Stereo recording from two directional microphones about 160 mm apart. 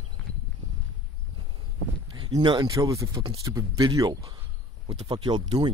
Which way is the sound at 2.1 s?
25° right (ahead or behind).